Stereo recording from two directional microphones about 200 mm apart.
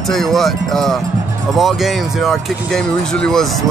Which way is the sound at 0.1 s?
Centre (ahead or behind).